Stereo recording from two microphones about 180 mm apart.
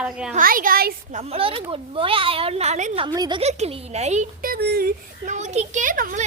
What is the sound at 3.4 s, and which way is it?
Speech, 35° right (ahead or behind).